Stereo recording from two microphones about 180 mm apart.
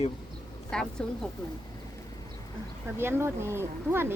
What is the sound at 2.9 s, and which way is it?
Speech, 15° right (ahead or behind).